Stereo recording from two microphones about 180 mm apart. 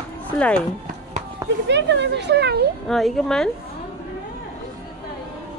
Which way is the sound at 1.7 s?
75° right (ahead or behind).